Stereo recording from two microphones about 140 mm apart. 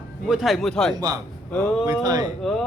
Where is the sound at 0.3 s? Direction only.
Centre (ahead or behind).